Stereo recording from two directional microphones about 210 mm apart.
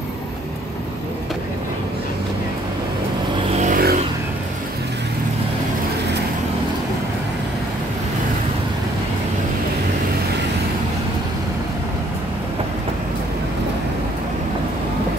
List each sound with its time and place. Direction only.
3.6 s vehicle: 45° right (ahead or behind)